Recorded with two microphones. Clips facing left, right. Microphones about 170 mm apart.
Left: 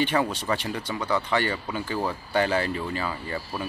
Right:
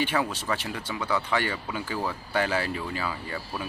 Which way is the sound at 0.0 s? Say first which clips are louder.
Left 3 dB; 5° right (ahead or behind).